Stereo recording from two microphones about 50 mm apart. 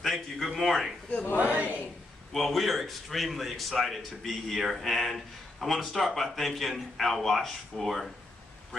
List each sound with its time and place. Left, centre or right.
0.0 s speech: centre
1.3 s speech: right
2.3 s a man's voice: centre